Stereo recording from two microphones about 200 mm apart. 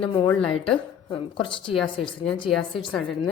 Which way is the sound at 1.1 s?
25° left (ahead or behind).